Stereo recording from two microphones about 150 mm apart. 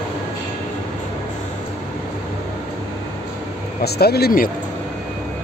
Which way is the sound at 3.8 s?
90° left.